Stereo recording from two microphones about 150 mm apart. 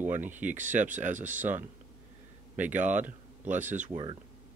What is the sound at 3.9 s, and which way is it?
Speech, 30° right (ahead or behind).